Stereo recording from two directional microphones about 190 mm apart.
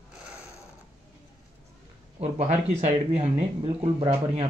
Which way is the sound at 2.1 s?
35° right (ahead or behind).